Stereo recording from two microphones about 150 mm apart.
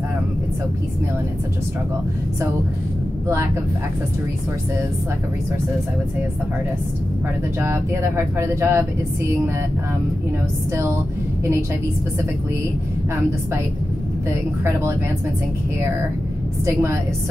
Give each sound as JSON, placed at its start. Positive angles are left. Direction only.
{"t": 7.6, "sound": "speech", "side_deg": -15}
{"t": 14.6, "sound": "speech", "side_deg": -20}
{"t": 16.6, "sound": "a woman's voice", "side_deg": -20}